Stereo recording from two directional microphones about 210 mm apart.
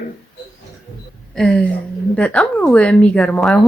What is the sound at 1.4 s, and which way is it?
Speech, 5° left (ahead or behind).